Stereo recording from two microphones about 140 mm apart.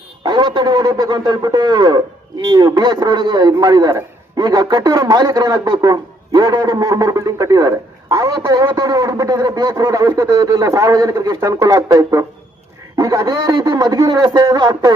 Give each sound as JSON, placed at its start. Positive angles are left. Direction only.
{"t": 0.2, "sound": "a man's voice", "side_deg": -30}